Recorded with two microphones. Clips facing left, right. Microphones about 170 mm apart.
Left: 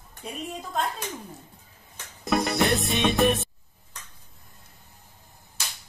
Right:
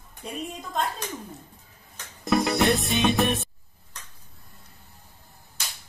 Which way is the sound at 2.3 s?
Centre (ahead or behind).